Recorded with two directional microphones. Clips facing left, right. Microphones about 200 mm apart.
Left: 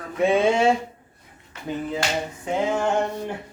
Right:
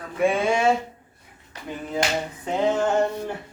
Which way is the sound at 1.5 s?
35° right (ahead or behind).